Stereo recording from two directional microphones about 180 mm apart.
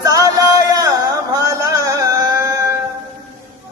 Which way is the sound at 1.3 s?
20° right (ahead or behind).